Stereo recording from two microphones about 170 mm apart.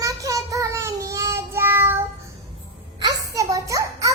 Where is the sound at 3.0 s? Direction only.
20° right (ahead or behind).